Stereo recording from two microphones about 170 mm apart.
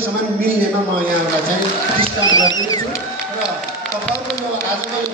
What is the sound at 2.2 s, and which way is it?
Speech, 25° left (ahead or behind).